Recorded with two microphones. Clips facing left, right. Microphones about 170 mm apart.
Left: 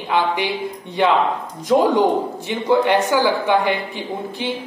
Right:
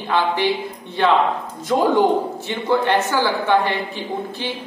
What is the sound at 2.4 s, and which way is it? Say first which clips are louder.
A man's voice: left 3 dB; 15° left (ahead or behind).